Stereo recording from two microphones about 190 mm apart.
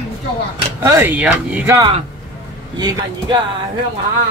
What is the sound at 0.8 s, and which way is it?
Speech, 10° right (ahead or behind).